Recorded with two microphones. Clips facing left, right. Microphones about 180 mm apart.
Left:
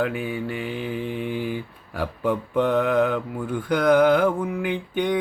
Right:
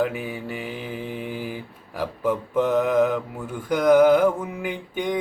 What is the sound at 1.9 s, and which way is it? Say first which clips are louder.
Speech: even; 5° right (ahead or behind).